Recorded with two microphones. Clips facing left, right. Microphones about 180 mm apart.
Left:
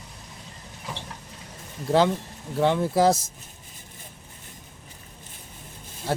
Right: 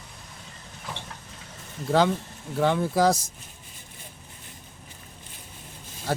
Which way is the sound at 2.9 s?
25° left (ahead or behind).